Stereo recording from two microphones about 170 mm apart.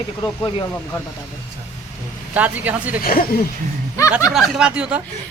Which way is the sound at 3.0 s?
60° left (ahead or behind).